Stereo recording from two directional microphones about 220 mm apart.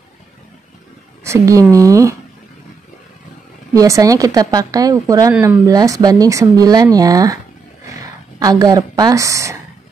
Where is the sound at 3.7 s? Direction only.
15° right (ahead or behind).